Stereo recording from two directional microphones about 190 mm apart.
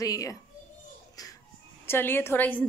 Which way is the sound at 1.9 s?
10° left (ahead or behind).